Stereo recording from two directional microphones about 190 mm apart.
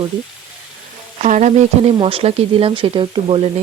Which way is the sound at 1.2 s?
40° right (ahead or behind).